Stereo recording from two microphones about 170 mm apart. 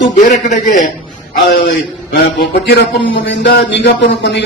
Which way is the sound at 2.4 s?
90° left.